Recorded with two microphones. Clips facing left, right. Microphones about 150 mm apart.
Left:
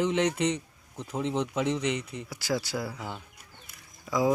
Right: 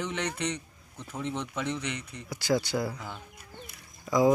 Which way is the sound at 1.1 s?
25° left (ahead or behind).